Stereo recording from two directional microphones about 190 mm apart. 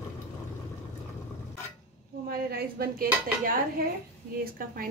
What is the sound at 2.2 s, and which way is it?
A woman's voice, 50° right (ahead or behind).